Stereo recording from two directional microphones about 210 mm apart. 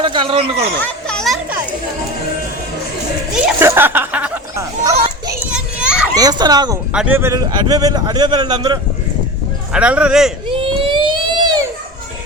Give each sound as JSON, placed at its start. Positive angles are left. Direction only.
{"t": 0.0, "sound": "speech", "side_deg": -25}
{"t": 0.8, "sound": "children playing", "side_deg": 5}
{"t": 3.4, "sound": "a sound", "side_deg": -10}
{"t": 5.5, "sound": "children playing", "side_deg": -5}
{"t": 6.1, "sound": "a man's voice", "side_deg": -20}
{"t": 6.9, "sound": "a man's voice", "side_deg": -5}
{"t": 9.7, "sound": "a man's voice", "side_deg": -5}
{"t": 10.6, "sound": "a sound", "side_deg": -25}